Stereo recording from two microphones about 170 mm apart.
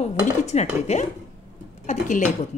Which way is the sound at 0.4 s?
40° left (ahead or behind).